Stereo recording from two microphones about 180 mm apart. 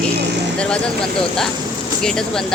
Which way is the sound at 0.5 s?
5° left (ahead or behind).